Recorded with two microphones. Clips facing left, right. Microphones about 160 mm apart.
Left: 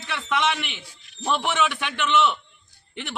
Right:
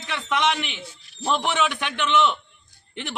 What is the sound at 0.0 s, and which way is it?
A man's voice, 15° right (ahead or behind).